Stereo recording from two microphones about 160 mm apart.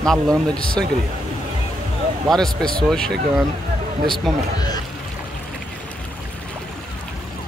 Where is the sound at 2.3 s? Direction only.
5° left (ahead or behind).